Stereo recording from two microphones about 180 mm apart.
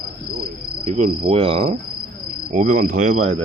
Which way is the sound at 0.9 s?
40° right (ahead or behind).